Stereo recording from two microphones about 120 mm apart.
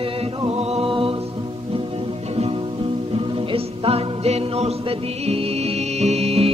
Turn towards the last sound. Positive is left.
turn(degrees=-60)  # may be behind; listen again after turning